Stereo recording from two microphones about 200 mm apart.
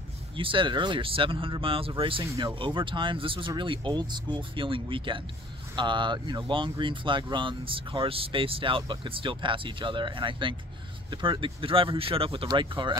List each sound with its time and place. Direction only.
0.4 s speech: 25° right (ahead or behind)